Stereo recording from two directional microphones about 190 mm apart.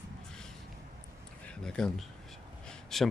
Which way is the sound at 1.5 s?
5° left (ahead or behind).